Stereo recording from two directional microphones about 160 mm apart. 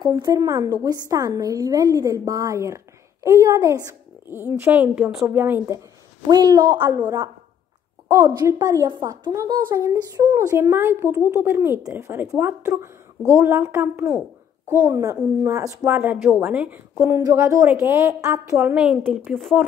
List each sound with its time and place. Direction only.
0.0 s a woman's voice: 25° right (ahead or behind)
6.2 s a woman's voice: 25° right (ahead or behind)